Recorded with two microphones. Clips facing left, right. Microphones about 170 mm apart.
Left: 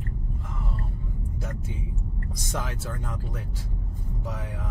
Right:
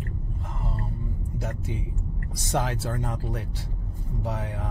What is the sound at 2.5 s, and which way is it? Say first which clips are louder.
Speech: right 7 dB; 75° right (ahead or behind).